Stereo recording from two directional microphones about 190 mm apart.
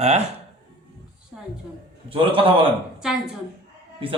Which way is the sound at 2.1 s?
30° right (ahead or behind).